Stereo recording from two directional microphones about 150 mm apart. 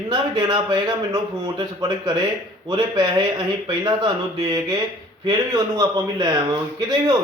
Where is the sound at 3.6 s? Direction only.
30° right (ahead or behind).